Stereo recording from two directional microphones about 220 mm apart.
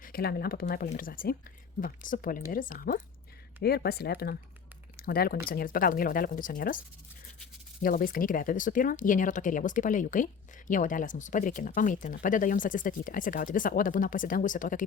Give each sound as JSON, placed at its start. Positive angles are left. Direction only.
{"t": 0.0, "sound": "speech", "side_deg": 45}
{"t": 7.8, "sound": "speech", "side_deg": 40}